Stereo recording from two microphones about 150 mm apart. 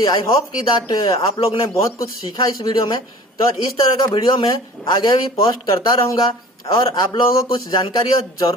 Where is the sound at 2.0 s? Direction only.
25° left (ahead or behind).